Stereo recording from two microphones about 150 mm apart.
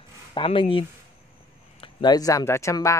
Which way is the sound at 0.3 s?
35° left (ahead or behind).